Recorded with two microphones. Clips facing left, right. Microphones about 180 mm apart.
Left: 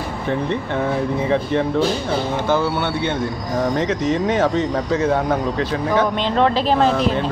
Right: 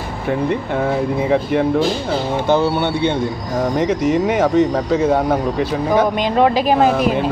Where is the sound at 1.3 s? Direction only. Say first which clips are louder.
Right 3 dB; 10° right (ahead or behind).